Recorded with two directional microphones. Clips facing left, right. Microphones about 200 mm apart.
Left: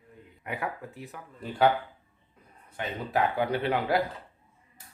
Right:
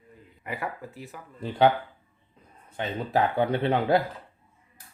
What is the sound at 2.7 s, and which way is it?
A man's voice, 25° right (ahead or behind).